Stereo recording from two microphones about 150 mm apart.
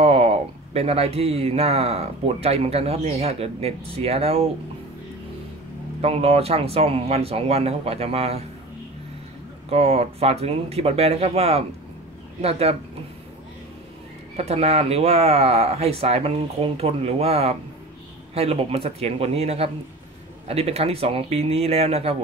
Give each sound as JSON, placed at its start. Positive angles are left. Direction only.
{"t": 0.0, "sound": "speech", "side_deg": -40}
{"t": 5.9, "sound": "speech", "side_deg": -40}
{"t": 9.7, "sound": "speech", "side_deg": -40}
{"t": 14.3, "sound": "speech", "side_deg": -45}